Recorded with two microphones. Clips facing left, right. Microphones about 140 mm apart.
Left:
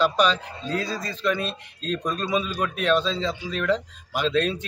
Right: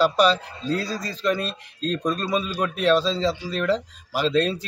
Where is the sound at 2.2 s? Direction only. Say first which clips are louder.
Right 1 dB; 40° right (ahead or behind).